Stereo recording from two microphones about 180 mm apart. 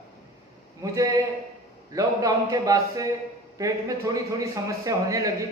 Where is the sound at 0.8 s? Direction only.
20° right (ahead or behind).